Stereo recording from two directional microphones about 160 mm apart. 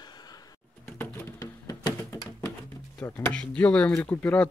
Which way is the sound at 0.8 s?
15° left (ahead or behind).